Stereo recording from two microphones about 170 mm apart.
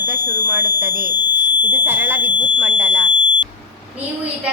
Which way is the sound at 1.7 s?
10° right (ahead or behind).